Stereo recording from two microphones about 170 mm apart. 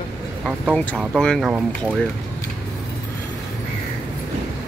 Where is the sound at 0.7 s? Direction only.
5° left (ahead or behind).